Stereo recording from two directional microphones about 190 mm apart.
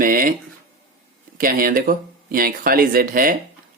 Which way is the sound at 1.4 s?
50° right (ahead or behind).